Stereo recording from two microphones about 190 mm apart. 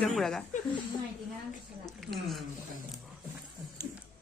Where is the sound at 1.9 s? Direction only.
Centre (ahead or behind).